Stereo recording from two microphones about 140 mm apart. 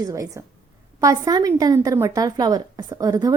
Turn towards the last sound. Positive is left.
turn(degrees=-25)  # may be behind; listen again after turning